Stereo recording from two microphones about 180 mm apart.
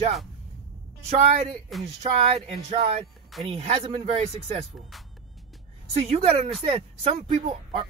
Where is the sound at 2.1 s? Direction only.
35° right (ahead or behind).